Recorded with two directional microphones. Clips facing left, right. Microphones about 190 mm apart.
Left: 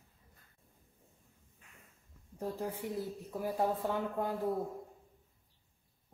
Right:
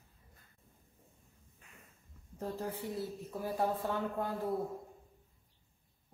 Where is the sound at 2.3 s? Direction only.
15° left (ahead or behind).